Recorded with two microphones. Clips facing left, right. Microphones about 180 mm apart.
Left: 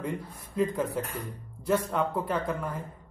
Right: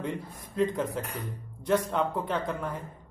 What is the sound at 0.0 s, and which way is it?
Speech, 5° left (ahead or behind).